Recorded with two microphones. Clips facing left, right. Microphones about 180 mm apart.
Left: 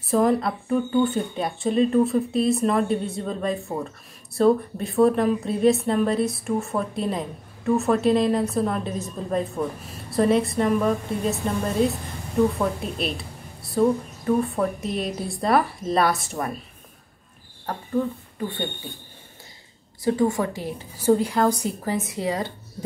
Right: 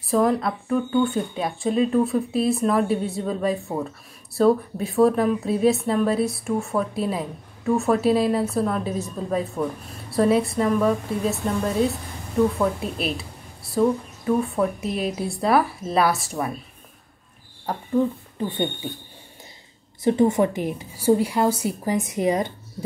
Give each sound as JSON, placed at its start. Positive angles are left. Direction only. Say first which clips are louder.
{"t": 0.0, "sound": "speech", "louder": "even", "side_deg": 0}
{"t": 20.0, "sound": "a woman's voice", "louder": "right 3 dB", "side_deg": -20}